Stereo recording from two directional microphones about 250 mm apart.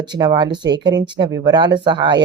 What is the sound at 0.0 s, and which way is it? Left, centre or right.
A woman's voice, centre.